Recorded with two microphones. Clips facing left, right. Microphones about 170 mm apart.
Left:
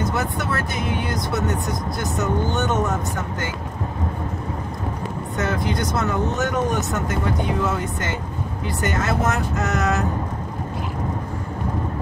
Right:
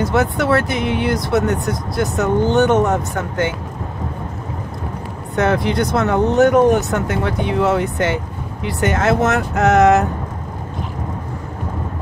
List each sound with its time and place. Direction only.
0.0 s speech: 70° right (ahead or behind)
5.3 s speech: 65° right (ahead or behind)